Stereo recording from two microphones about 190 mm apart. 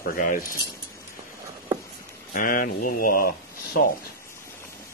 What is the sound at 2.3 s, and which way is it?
Speech, 45° left (ahead or behind).